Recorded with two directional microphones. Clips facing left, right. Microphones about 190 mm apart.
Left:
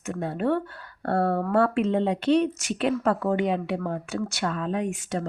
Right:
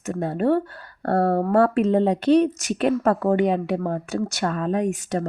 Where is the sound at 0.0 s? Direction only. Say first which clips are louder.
Right 4 dB; 40° right (ahead or behind).